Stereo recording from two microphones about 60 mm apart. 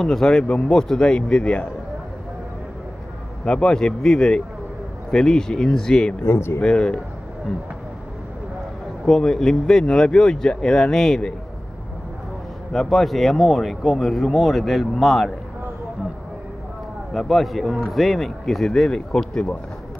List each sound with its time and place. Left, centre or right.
0.0 s speech: centre
3.4 s speech: centre
6.2 s speech: left
6.6 s speech: centre
9.0 s speech: centre
12.7 s a man's voice: centre
17.1 s a man's voice: centre